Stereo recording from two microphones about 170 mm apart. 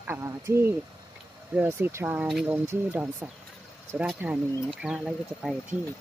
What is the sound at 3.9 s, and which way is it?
Speech, centre (ahead or behind).